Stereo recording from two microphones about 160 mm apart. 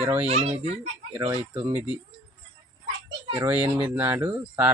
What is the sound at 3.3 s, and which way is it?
Speech, 10° right (ahead or behind).